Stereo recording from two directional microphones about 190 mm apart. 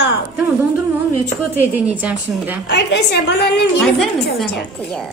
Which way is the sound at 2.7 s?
65° left (ahead or behind).